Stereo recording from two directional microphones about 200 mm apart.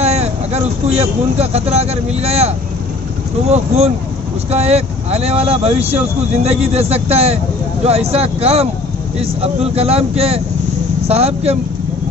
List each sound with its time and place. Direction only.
0.0 s speech: 30° right (ahead or behind)